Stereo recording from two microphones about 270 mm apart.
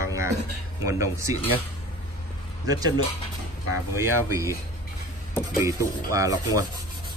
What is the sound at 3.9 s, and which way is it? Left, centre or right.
Speech, centre.